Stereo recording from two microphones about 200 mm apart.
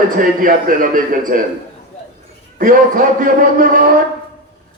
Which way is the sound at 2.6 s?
45° right (ahead or behind).